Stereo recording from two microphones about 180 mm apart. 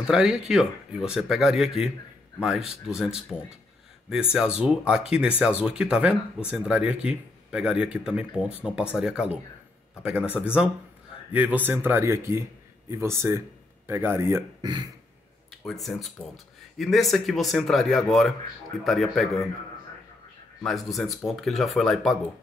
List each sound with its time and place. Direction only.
0.0 s speech: 5° right (ahead or behind); by 14.9 s 20° right (ahead or behind)
15.5 s speech: centre (ahead or behind)
20.6 s speech: centre (ahead or behind)